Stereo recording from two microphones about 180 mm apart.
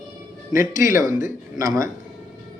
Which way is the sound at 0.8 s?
15° right (ahead or behind).